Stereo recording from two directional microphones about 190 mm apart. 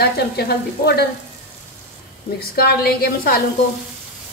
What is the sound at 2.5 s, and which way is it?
Frying, 55° left (ahead or behind).